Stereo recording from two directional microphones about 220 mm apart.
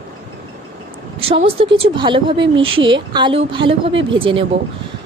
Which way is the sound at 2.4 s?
65° right (ahead or behind).